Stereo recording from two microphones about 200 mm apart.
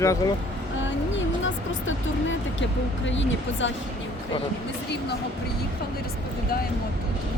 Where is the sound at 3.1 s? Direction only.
65° left (ahead or behind).